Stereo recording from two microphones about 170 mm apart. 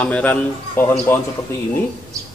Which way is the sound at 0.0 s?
10° left (ahead or behind).